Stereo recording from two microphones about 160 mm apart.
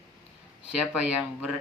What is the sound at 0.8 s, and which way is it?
Speech, 5° right (ahead or behind).